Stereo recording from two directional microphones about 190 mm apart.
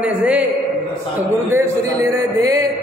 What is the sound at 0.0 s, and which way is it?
Speech, 10° right (ahead or behind).